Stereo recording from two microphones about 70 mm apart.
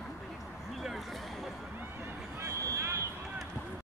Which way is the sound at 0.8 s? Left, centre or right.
Centre.